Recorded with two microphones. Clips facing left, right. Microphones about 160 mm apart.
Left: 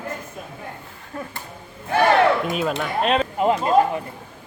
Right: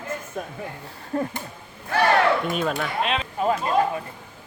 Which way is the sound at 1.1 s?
35° right (ahead or behind).